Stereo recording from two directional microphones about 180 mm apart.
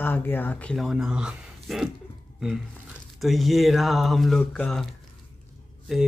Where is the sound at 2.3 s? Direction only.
5° right (ahead or behind).